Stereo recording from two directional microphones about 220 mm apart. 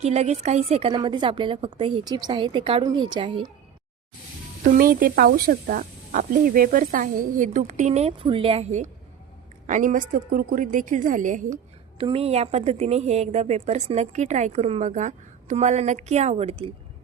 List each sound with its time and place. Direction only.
0.0 s a woman's voice: 30° right (ahead or behind)
4.8 s a woman's voice: 40° right (ahead or behind); by 16.7 s 25° right (ahead or behind)